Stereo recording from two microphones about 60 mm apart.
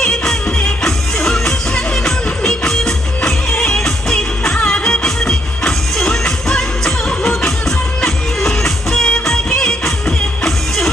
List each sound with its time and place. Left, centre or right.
0.0 s music: centre